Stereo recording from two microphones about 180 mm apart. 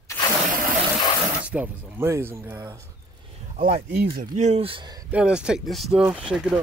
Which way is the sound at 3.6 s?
55° right (ahead or behind).